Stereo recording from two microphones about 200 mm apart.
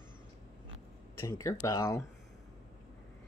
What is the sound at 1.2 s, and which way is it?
Speech, 15° left (ahead or behind).